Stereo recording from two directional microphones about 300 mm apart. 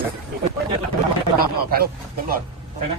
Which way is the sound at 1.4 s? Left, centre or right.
Right.